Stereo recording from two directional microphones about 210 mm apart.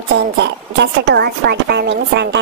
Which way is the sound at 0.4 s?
55° right (ahead or behind).